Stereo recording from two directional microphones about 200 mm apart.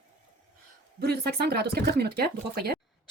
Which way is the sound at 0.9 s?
55° right (ahead or behind).